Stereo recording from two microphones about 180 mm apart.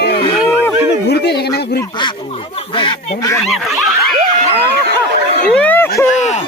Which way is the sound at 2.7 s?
25° left (ahead or behind).